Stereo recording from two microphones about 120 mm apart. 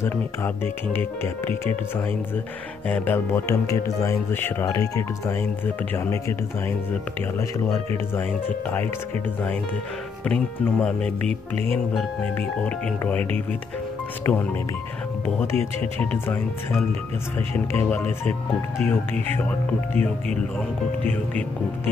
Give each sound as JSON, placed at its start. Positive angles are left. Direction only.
{"t": 0.0, "sound": "speech", "side_deg": 20}
{"t": 2.9, "sound": "speech", "side_deg": 15}
{"t": 7.3, "sound": "speech", "side_deg": 25}
{"t": 8.1, "sound": "speech", "side_deg": 15}
{"t": 10.2, "sound": "speech", "side_deg": 10}
{"t": 12.4, "sound": "speech", "side_deg": 15}